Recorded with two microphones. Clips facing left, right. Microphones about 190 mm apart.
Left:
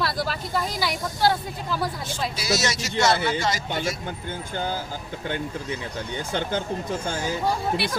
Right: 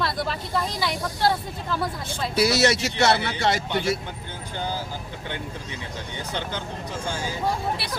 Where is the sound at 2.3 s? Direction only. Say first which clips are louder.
Right 8 dB; 60° right (ahead or behind).